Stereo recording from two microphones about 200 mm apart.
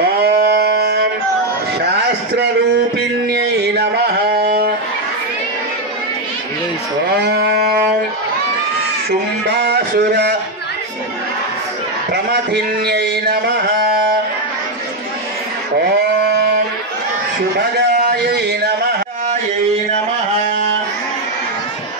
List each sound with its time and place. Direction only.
0.2 s music: 55° right (ahead or behind)
3.3 s music: 55° right (ahead or behind)
9.5 s a sound: 55° right (ahead or behind)
12.1 s a man's voice: 55° right (ahead or behind)